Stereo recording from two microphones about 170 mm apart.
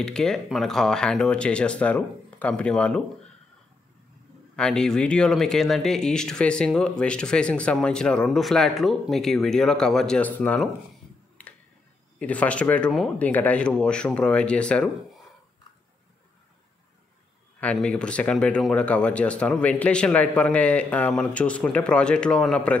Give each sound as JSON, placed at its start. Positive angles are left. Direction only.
{"t": 0.0, "sound": "speech", "side_deg": 5}
{"t": 4.6, "sound": "speech", "side_deg": 5}
{"t": 11.4, "sound": "a sound", "side_deg": 10}
{"t": 12.2, "sound": "speech", "side_deg": 10}
{"t": 17.6, "sound": "speech", "side_deg": 5}